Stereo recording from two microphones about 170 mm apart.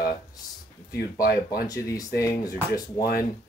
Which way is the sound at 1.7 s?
20° left (ahead or behind).